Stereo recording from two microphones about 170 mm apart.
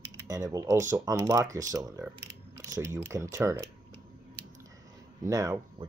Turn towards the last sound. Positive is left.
turn(degrees=-20)  # may be behind; listen again after turning